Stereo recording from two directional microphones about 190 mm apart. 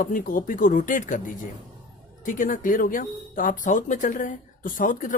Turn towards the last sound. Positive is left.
turn(degrees=45)  # may be behind; listen again after turning